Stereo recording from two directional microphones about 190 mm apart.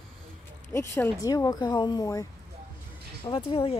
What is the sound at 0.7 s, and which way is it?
Speech, 15° left (ahead or behind).